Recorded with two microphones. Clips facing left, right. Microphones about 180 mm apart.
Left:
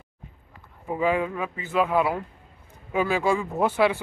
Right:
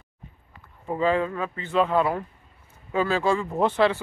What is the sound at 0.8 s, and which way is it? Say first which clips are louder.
Speech: right 1 dB; 10° left (ahead or behind).